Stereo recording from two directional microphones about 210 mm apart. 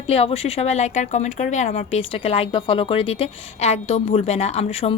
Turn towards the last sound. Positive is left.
turn(degrees=30)  # may be behind; listen again after turning